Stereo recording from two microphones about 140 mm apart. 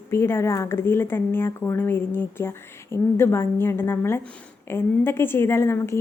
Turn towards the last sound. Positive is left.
turn(degrees=20)  # may be behind; listen again after turning